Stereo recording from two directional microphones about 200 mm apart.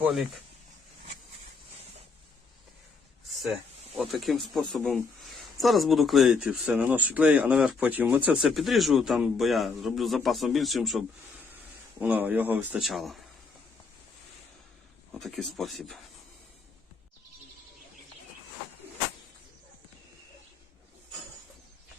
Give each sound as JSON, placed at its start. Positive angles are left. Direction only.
{"t": 0.0, "sound": "speech", "side_deg": 0}
{"t": 3.9, "sound": "speech", "side_deg": 0}
{"t": 15.1, "sound": "speech", "side_deg": 0}